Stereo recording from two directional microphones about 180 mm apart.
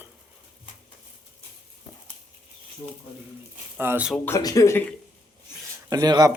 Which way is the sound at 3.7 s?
10° right (ahead or behind).